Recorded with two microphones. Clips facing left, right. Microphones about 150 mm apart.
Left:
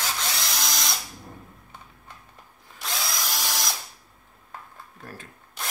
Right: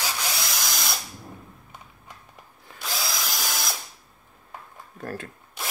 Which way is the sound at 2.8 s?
Centre (ahead or behind).